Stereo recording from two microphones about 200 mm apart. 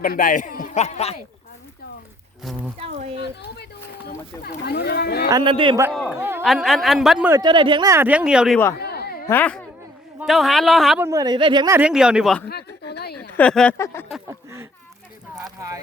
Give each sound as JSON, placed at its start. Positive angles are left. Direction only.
{"t": 0.0, "sound": "a man's voice", "side_deg": 45}
{"t": 2.4, "sound": "speech", "side_deg": 0}
{"t": 2.7, "sound": "speech", "side_deg": -30}
{"t": 4.4, "sound": "speech", "side_deg": 55}
{"t": 5.3, "sound": "speech", "side_deg": -25}
{"t": 5.9, "sound": "a man's voice", "side_deg": 0}
{"t": 7.3, "sound": "speech", "side_deg": -20}
{"t": 8.8, "sound": "a sound", "side_deg": 50}
{"t": 9.2, "sound": "a man's voice", "side_deg": 10}
{"t": 11.0, "sound": "speech", "side_deg": -15}
{"t": 11.8, "sound": "a man's voice", "side_deg": -5}
{"t": 12.5, "sound": "speech", "side_deg": 55}
{"t": 13.3, "sound": "speech", "side_deg": 5}
{"t": 14.3, "sound": "speech", "side_deg": -15}